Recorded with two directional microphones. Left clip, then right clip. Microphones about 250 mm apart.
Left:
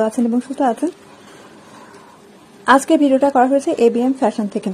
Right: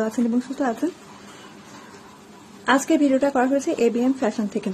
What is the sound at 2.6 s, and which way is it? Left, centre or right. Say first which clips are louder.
A woman's voice: left 6 dB; centre.